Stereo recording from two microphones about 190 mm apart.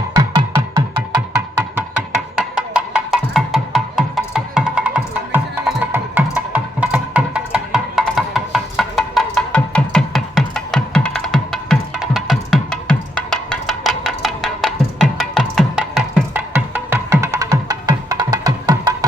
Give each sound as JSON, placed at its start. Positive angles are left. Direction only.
{"t": 0.8, "sound": "music", "side_deg": -20}
{"t": 2.3, "sound": "music", "side_deg": -5}